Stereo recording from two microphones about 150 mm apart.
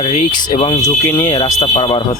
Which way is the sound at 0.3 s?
30° left (ahead or behind).